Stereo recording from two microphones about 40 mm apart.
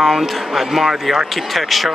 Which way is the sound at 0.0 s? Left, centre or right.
Centre.